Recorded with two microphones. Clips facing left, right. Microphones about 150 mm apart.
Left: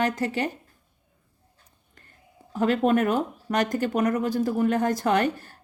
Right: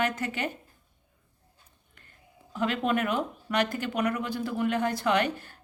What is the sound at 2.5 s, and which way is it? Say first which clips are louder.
Speech: left 6 dB; 40° left (ahead or behind).